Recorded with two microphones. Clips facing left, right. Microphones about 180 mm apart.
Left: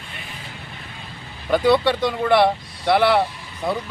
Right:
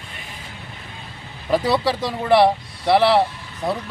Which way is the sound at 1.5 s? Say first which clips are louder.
Left 2 dB; centre (ahead or behind).